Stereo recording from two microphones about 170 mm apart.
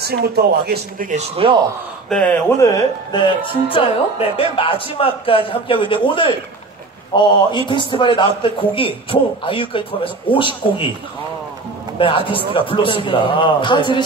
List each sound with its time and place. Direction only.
0.0 s speech: 70° right (ahead or behind)
1.1 s speech: 35° right (ahead or behind)
2.0 s speech: 5° left (ahead or behind); by 5.9 s 30° left (ahead or behind)
7.2 s a man's voice: 30° left (ahead or behind)
12.0 s a man's voice: 30° left (ahead or behind)